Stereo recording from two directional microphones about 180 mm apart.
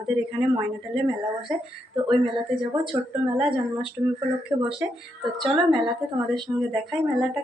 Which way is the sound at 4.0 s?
20° right (ahead or behind).